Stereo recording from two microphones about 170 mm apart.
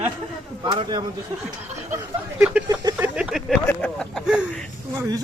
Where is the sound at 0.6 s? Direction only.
25° right (ahead or behind).